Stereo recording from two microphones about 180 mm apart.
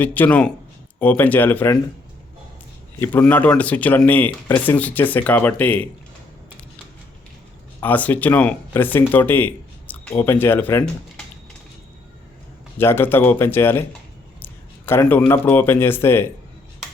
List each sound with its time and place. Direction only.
0.0 s speech: 10° left (ahead or behind)
3.0 s speech: 10° left (ahead or behind)
7.8 s speech: 10° left (ahead or behind)
12.8 s speech: 10° left (ahead or behind)